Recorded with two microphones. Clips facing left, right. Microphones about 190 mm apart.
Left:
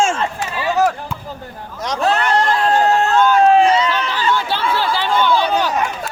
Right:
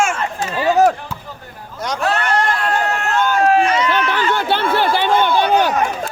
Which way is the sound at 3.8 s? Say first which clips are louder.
Right 1 dB; 60° right (ahead or behind).